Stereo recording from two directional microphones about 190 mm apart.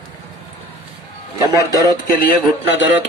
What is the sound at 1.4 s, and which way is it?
Speech, 20° right (ahead or behind).